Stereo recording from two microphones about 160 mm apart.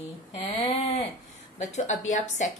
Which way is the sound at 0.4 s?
40° left (ahead or behind).